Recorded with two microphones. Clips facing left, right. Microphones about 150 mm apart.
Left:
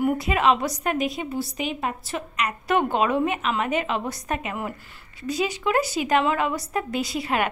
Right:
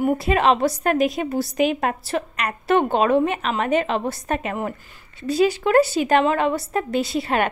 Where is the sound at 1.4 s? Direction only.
75° right (ahead or behind).